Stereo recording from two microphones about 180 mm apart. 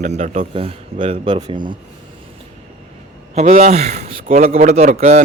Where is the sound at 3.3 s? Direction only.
35° right (ahead or behind).